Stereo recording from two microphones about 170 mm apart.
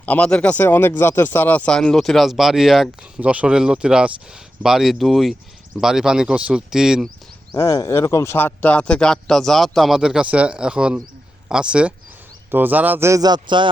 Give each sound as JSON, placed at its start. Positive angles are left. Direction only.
{"t": 0.0, "sound": "speech", "side_deg": 10}
{"t": 7.5, "sound": "speech", "side_deg": 15}